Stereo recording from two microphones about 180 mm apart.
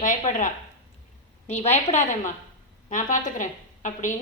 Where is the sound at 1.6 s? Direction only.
40° left (ahead or behind).